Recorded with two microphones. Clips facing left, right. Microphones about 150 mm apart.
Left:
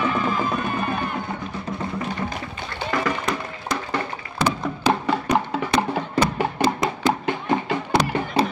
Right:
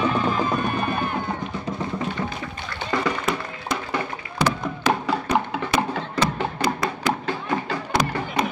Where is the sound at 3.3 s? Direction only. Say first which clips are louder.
Right 1 dB; 5° right (ahead or behind).